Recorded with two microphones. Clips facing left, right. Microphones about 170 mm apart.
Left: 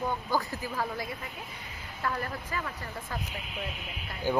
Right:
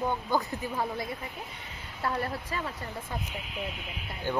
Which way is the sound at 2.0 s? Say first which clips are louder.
Right 2 dB; 30° right (ahead or behind).